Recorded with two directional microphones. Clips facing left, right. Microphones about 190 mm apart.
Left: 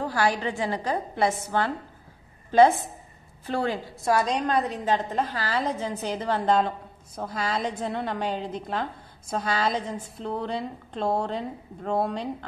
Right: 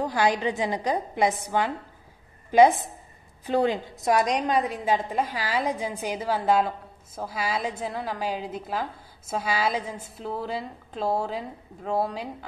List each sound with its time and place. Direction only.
0.0 s a woman's voice: 20° right (ahead or behind)